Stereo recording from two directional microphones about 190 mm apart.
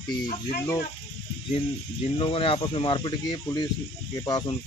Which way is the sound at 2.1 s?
30° left (ahead or behind).